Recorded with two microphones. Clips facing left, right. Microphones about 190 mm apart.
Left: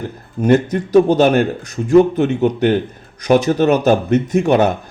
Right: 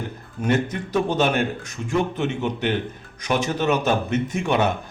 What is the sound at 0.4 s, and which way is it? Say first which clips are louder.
Speech: left 9 dB; 40° left (ahead or behind).